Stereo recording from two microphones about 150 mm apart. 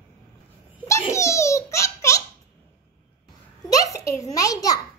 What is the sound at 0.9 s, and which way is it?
Giggle, 20° left (ahead or behind).